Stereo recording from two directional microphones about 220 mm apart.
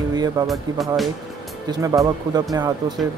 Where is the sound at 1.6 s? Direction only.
15° right (ahead or behind).